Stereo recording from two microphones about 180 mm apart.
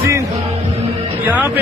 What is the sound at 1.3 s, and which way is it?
Speech, 10° right (ahead or behind).